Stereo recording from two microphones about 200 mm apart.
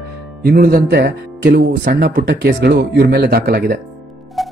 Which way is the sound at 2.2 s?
55° right (ahead or behind).